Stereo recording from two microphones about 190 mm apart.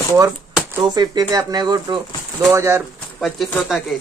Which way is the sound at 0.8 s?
20° right (ahead or behind).